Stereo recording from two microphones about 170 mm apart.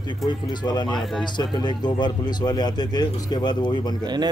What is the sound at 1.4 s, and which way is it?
Speech, 25° left (ahead or behind).